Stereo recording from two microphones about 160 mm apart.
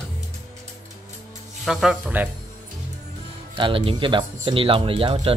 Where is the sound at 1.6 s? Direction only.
5° right (ahead or behind).